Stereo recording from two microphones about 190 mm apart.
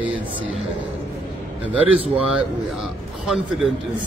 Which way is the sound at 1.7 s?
10° right (ahead or behind).